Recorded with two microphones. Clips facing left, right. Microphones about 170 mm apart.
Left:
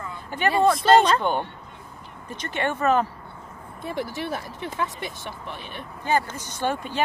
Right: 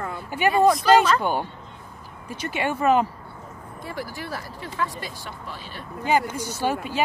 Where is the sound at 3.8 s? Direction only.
20° left (ahead or behind).